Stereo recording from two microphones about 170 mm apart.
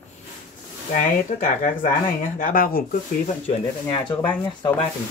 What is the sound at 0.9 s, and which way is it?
Speech, 45° left (ahead or behind).